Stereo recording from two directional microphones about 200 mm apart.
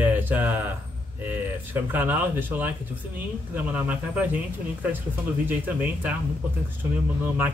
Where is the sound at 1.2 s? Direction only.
10° right (ahead or behind).